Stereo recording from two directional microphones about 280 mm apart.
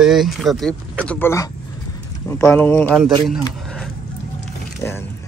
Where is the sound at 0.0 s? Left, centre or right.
Centre.